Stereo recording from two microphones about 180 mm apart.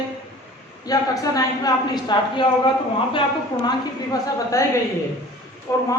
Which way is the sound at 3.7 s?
20° left (ahead or behind).